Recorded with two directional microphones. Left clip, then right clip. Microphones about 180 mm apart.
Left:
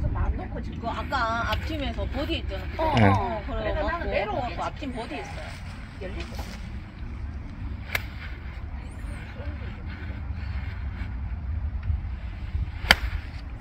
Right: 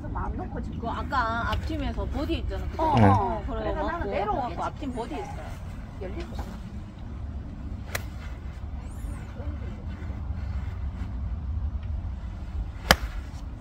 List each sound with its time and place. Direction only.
0.1 s speech: 40° left (ahead or behind)